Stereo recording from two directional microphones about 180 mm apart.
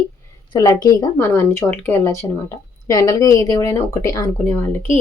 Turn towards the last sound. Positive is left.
turn(degrees=10)  # may be behind; listen again after turning